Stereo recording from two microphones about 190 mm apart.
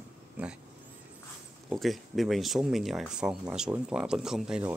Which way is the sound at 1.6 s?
Centre (ahead or behind).